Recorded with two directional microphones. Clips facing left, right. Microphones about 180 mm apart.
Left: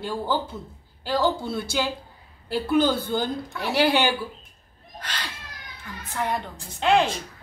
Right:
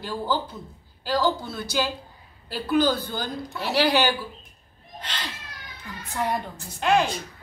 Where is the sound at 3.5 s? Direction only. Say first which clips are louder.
Even; 20° right (ahead or behind).